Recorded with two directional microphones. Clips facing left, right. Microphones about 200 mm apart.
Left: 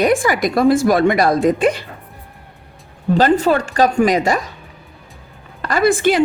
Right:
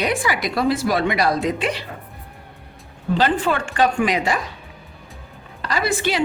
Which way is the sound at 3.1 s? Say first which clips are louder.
Left 6 dB; 40° left (ahead or behind).